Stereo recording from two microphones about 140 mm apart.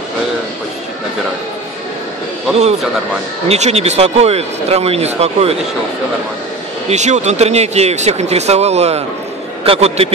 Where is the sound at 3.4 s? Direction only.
50° right (ahead or behind).